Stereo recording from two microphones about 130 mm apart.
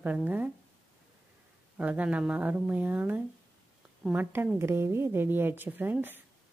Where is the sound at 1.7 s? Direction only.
10° right (ahead or behind).